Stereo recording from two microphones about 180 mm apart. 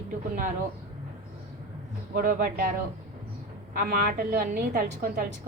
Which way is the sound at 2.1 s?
50° right (ahead or behind).